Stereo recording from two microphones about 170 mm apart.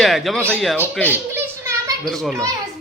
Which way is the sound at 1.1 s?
15° right (ahead or behind).